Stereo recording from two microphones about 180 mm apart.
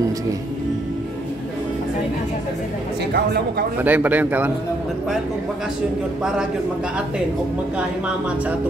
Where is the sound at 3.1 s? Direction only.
65° right (ahead or behind).